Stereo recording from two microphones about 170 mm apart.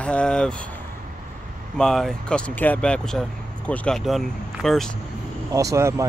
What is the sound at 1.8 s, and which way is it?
Speech, 5° left (ahead or behind).